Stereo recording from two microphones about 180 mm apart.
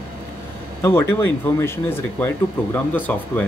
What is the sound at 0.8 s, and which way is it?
A man's voice, 15° left (ahead or behind).